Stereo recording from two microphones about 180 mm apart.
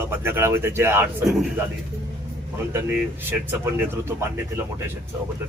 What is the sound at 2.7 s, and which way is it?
Speech, 10° right (ahead or behind).